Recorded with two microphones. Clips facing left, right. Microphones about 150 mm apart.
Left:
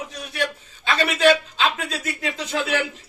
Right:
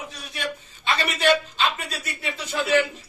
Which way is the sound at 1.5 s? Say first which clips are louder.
Left 2 dB; 90° left.